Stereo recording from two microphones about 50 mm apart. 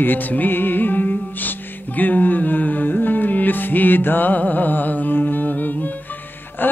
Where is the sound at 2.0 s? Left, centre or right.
Left.